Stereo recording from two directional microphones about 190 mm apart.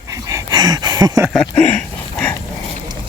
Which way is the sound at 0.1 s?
15° right (ahead or behind).